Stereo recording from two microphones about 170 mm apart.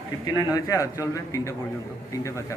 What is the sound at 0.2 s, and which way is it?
A man's voice, 25° left (ahead or behind).